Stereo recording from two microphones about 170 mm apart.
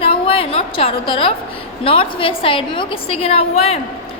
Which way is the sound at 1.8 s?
30° left (ahead or behind).